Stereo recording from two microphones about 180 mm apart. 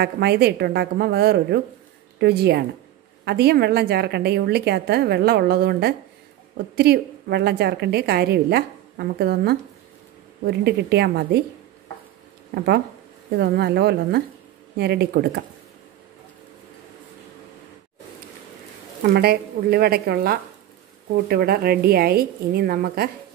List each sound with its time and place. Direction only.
0.0 s a woman's voice: 60° right (ahead or behind)
12.5 s a woman's voice: 60° right (ahead or behind)
19.1 s a woman's voice: 60° right (ahead or behind)